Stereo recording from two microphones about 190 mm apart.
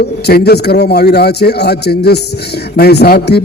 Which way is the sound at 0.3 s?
60° left (ahead or behind).